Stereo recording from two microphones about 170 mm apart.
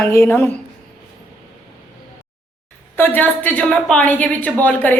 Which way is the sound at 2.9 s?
10° left (ahead or behind).